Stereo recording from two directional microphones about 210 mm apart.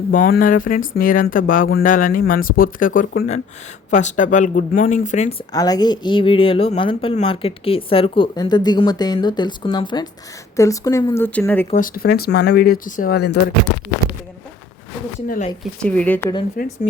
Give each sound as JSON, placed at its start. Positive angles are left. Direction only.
{"t": 0.1, "sound": "speech", "side_deg": 40}
{"t": 5.5, "sound": "speech", "side_deg": 15}
{"t": 11.7, "sound": "speech", "side_deg": 40}
{"t": 15.8, "sound": "speech", "side_deg": 5}
{"t": 16.6, "sound": "speech", "side_deg": 45}